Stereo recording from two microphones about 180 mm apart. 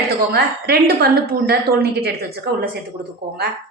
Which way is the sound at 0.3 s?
60° right (ahead or behind).